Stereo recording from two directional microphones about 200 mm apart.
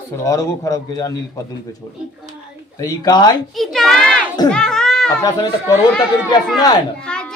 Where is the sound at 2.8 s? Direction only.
20° left (ahead or behind).